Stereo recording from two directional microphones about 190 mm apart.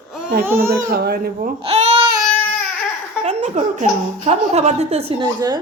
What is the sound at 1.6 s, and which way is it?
Babbling, 35° right (ahead or behind).